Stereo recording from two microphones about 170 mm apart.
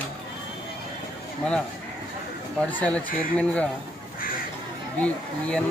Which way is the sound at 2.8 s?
5° left (ahead or behind).